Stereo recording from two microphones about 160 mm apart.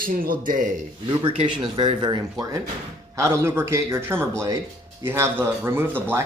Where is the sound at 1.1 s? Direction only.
30° right (ahead or behind).